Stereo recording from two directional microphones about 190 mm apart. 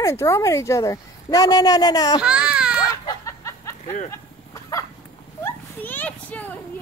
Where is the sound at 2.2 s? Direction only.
5° right (ahead or behind).